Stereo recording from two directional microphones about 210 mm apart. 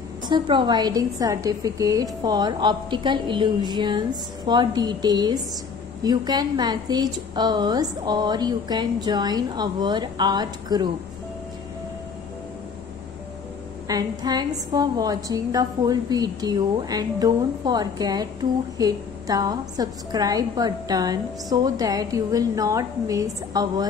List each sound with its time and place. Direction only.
0.3 s a woman's voice: 20° right (ahead or behind)
13.8 s a woman's voice: 20° right (ahead or behind)